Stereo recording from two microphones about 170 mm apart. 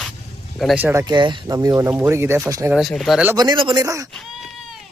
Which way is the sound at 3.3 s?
25° right (ahead or behind).